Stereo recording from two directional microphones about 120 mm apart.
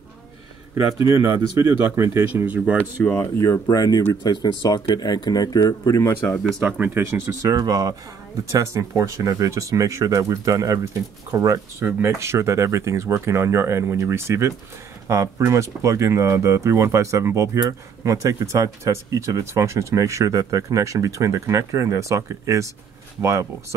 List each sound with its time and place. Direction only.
1.0 s speech: 20° right (ahead or behind)
2.2 s speech: 15° right (ahead or behind)
3.0 s speech: 15° left (ahead or behind)
6.2 s speech: 10° left (ahead or behind)
6.8 s speech: 20° right (ahead or behind)